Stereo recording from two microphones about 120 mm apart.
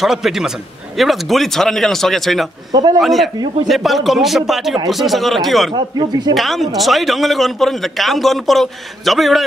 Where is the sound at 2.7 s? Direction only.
35° right (ahead or behind).